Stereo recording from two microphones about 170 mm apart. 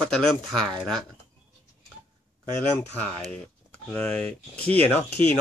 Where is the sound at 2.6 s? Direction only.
45° left (ahead or behind).